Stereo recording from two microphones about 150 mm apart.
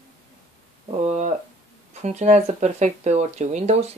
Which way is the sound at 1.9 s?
50° right (ahead or behind).